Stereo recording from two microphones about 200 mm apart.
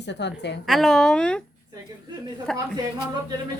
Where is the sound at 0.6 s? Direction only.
Centre (ahead or behind).